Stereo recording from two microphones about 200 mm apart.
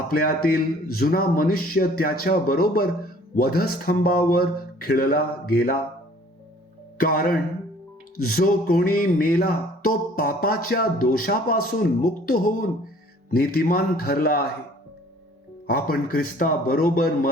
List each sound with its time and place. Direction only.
0.1 s music: 50° left (ahead or behind)
7.0 s music: 45° left (ahead or behind)
15.6 s music: 45° left (ahead or behind)